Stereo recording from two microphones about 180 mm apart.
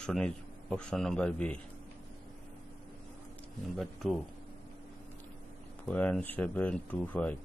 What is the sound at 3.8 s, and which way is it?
Speech, centre (ahead or behind).